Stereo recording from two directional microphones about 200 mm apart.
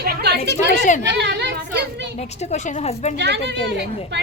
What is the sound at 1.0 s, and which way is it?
Chatter, 60° right (ahead or behind).